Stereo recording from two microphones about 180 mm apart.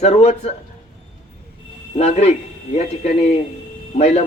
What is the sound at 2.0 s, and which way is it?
Speech, 35° left (ahead or behind).